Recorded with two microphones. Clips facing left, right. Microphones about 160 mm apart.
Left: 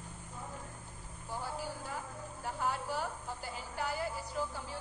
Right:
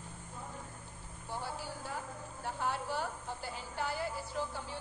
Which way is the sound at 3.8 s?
45° left (ahead or behind).